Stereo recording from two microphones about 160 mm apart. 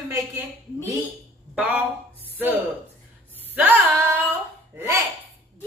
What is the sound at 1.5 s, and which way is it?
Speech, 5° right (ahead or behind).